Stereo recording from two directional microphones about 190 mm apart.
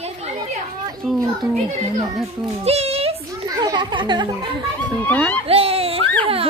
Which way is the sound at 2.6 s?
35° right (ahead or behind).